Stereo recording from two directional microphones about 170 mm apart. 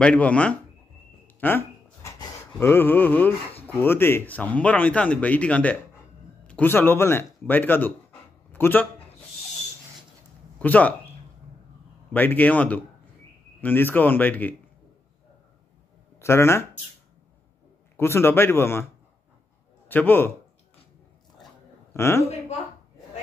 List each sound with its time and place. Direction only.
0.0 s speech: 5° left (ahead or behind)
1.2 s a sound: 10° left (ahead or behind)
2.1 s speech: 15° left (ahead or behind)
8.5 s a sound: 10° left (ahead or behind)
10.6 s speech: 10° left (ahead or behind)
12.1 s speech: 10° left (ahead or behind)
16.2 s speech: 15° left (ahead or behind)
17.9 s speech: 15° left (ahead or behind)
19.9 s speech: 10° left (ahead or behind)
21.9 s a man's voice: 15° left (ahead or behind)